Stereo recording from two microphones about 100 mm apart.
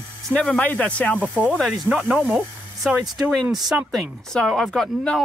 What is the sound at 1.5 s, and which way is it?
Speech, 5° left (ahead or behind).